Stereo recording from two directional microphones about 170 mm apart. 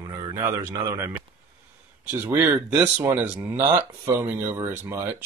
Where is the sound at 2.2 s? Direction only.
10° right (ahead or behind).